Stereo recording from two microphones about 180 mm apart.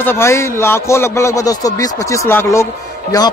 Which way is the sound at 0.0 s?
15° left (ahead or behind).